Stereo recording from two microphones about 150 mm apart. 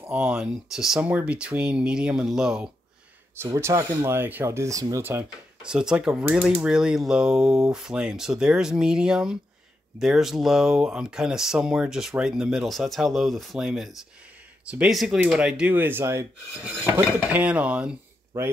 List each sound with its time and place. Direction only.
0.0 s speech: 10° right (ahead or behind)
3.3 s speech: 20° right (ahead or behind)
5.6 s speech: 5° right (ahead or behind)